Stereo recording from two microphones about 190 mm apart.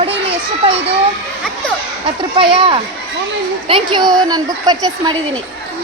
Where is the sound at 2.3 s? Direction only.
30° right (ahead or behind).